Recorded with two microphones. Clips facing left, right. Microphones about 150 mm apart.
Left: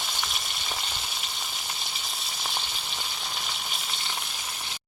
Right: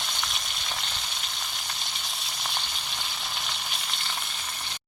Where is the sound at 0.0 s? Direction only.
Centre (ahead or behind).